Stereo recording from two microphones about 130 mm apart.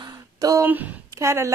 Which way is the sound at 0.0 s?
30° right (ahead or behind).